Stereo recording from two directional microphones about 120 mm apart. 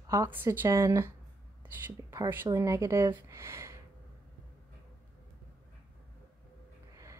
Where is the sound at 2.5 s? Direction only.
25° right (ahead or behind).